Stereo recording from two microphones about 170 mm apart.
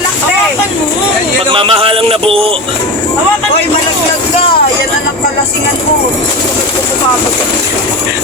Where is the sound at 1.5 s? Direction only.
30° right (ahead or behind).